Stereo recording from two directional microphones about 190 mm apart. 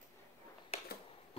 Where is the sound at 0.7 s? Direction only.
35° left (ahead or behind).